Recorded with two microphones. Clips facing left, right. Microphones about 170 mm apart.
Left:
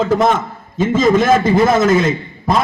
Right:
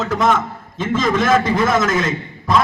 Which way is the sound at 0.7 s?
45° left (ahead or behind).